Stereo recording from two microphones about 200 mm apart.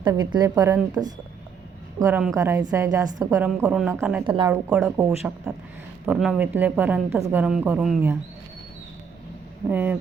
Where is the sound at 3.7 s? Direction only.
5° right (ahead or behind).